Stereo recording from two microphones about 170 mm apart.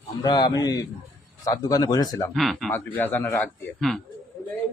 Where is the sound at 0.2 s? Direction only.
25° left (ahead or behind).